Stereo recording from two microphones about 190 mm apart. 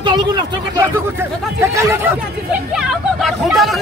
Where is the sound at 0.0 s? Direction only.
20° right (ahead or behind).